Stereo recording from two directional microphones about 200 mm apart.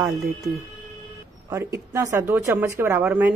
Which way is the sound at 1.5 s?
15° right (ahead or behind).